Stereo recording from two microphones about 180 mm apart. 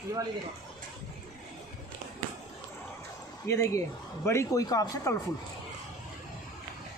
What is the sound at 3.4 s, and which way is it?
Speech, 15° left (ahead or behind).